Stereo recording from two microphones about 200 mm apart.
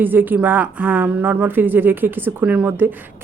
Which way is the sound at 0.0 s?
10° right (ahead or behind).